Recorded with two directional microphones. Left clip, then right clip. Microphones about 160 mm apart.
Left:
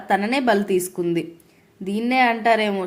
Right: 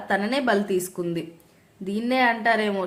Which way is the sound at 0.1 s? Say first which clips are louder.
Left 4 dB; 20° left (ahead or behind).